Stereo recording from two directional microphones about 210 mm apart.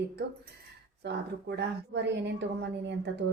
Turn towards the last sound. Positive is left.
turn(degrees=-55)  # may be behind; listen again after turning